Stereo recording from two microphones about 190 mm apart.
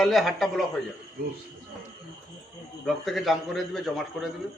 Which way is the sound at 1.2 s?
55° right (ahead or behind).